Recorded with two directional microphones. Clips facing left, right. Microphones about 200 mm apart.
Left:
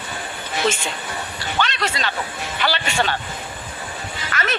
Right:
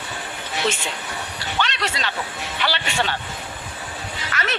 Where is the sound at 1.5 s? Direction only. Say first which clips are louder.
Left 2 dB; 50° left (ahead or behind).